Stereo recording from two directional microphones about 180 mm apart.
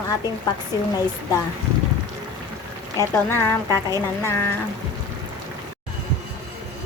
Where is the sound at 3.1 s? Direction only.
15° left (ahead or behind).